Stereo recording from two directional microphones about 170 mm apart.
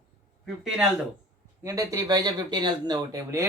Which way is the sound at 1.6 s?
20° right (ahead or behind).